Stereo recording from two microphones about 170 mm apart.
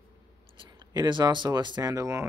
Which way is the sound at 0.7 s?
25° right (ahead or behind).